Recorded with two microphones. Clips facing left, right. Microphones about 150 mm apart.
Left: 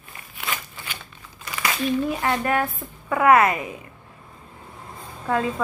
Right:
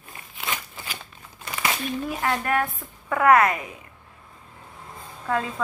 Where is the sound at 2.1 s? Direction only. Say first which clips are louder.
Left 2 dB; centre (ahead or behind).